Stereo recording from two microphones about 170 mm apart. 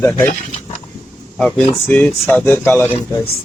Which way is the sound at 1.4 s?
5° left (ahead or behind).